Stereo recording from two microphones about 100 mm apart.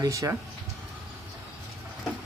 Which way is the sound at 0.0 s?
35° right (ahead or behind).